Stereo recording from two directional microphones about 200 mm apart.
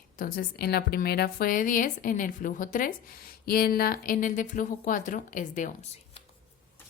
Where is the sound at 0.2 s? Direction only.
45° left (ahead or behind).